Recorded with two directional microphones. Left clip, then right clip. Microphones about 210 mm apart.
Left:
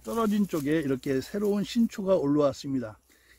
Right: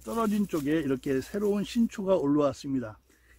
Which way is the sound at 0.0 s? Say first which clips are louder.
Left 1 dB; 35° left (ahead or behind).